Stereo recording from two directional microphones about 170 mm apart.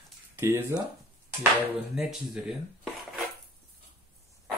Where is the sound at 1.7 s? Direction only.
5° right (ahead or behind).